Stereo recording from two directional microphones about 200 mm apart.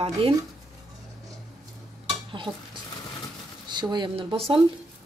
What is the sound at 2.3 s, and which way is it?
Dishes, 25° right (ahead or behind).